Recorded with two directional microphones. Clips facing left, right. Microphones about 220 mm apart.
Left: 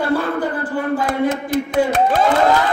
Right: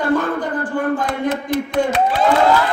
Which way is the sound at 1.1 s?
45° left (ahead or behind).